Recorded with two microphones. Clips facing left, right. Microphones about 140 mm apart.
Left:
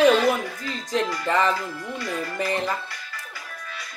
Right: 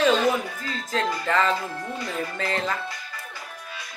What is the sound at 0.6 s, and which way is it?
Speech, 20° left (ahead or behind).